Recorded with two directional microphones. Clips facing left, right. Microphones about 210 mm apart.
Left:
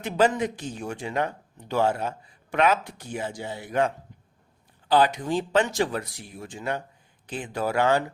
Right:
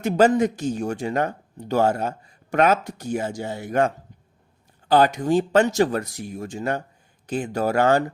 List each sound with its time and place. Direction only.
0.0 s speech: 40° right (ahead or behind)